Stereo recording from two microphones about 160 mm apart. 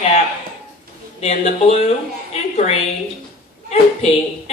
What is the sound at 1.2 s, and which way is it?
A woman's voice, 40° left (ahead or behind).